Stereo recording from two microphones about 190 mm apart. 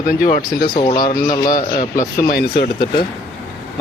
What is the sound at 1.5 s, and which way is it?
Speech, 45° left (ahead or behind).